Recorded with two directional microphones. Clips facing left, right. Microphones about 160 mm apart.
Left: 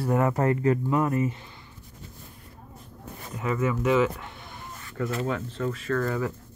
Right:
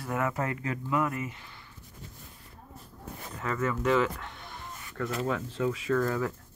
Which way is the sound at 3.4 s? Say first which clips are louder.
Left 4 dB; 10° left (ahead or behind).